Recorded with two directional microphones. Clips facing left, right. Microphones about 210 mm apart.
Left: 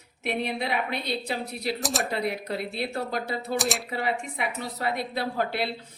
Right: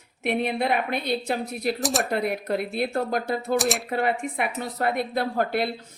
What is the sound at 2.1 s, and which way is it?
A woman's voice, 50° right (ahead or behind).